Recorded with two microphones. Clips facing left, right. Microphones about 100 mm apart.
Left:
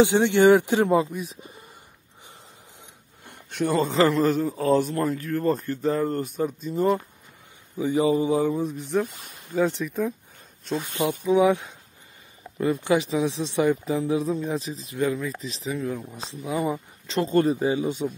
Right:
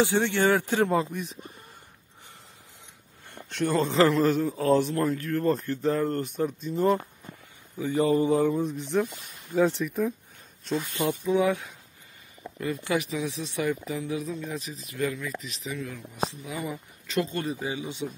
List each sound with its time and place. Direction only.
0.0 s speech: 20° left (ahead or behind)
1.1 s a man's voice: 5° left (ahead or behind)
3.3 s a man's voice: 10° left (ahead or behind)
7.8 s speech: 15° left (ahead or behind)
9.0 s speech: 45° left (ahead or behind)
9.5 s a man's voice: centre (ahead or behind)
10.8 s a man's voice: 20° left (ahead or behind); by 18.1 s 45° left (ahead or behind)